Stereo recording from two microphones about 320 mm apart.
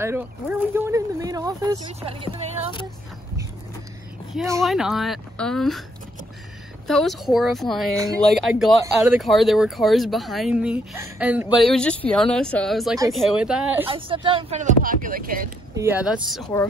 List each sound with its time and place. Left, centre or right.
0.0 s speech: centre
4.3 s speech: centre
6.9 s speech: centre
13.7 s speech: centre
15.7 s speech: centre